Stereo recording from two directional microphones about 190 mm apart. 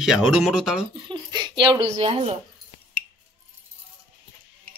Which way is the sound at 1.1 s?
25° right (ahead or behind).